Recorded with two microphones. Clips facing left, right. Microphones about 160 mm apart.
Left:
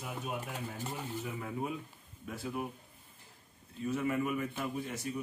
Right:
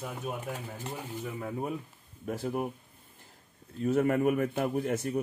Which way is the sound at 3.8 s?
55° right (ahead or behind).